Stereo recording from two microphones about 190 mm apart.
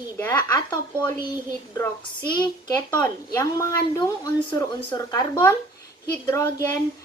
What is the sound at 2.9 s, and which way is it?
A woman's voice, 15° left (ahead or behind).